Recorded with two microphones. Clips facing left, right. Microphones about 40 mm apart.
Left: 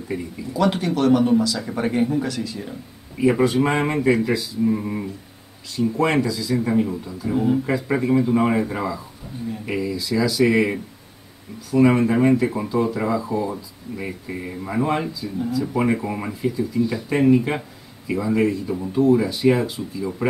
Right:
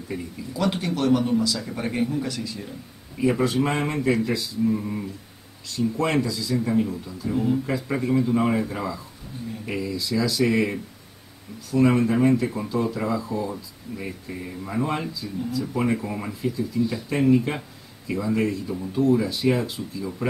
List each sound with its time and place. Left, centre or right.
0.1 s speech: centre
4.6 s speech: centre
5.8 s speech: centre